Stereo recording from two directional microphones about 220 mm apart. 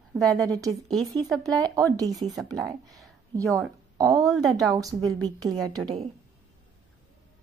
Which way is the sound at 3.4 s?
Centre (ahead or behind).